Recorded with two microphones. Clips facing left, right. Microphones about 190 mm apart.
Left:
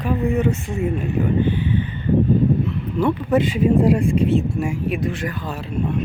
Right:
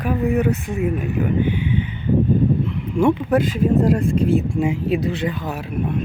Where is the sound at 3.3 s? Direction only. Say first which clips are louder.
Left 1 dB; 10° left (ahead or behind).